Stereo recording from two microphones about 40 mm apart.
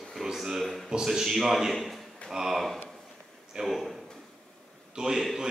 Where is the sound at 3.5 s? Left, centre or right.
Centre.